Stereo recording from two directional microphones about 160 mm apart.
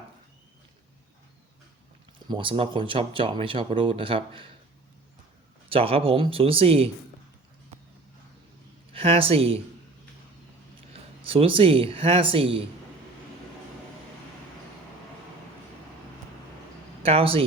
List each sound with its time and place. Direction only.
2.3 s speech: 30° right (ahead or behind)
5.7 s speech: 35° right (ahead or behind)
8.9 s speech: 35° right (ahead or behind)
11.2 s speech: 35° right (ahead or behind)
17.0 s speech: 35° right (ahead or behind)